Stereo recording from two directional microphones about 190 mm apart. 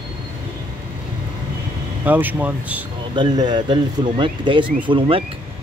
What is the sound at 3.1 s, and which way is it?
Speech, 25° right (ahead or behind).